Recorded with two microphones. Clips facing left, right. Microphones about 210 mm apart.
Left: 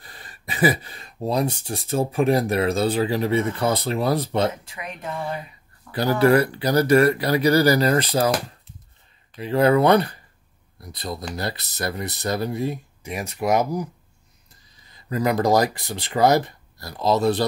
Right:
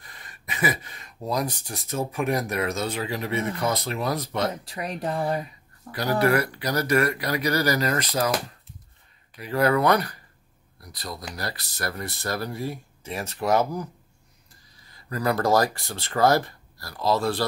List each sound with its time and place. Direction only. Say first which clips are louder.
0.0 s speech: left 4 dB; 30° left (ahead or behind)
4.6 s speech: right 4 dB; 35° right (ahead or behind)
5.9 s speech: left 5 dB; 30° left (ahead or behind)
9.4 s speech: left 4 dB; 25° left (ahead or behind)
14.9 s speech: left 3 dB; 20° left (ahead or behind)